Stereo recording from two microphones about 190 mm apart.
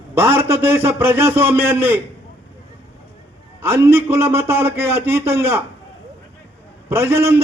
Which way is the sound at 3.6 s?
10° right (ahead or behind).